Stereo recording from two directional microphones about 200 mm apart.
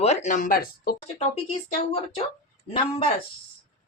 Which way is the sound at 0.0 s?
35° left (ahead or behind).